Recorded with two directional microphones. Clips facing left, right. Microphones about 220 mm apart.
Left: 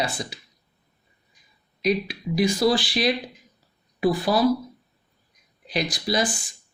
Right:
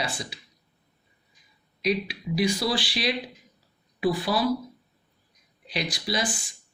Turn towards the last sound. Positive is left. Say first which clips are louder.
# left 5 dB
turn(degrees=45)  # may be behind; listen again after turning